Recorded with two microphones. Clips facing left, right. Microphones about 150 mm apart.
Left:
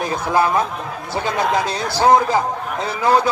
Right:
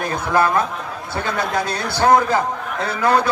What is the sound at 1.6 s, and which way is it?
Speech, 55° right (ahead or behind).